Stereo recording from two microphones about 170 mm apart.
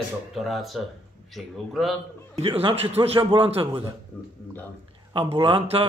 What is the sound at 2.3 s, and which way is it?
A man's voice, 35° right (ahead or behind).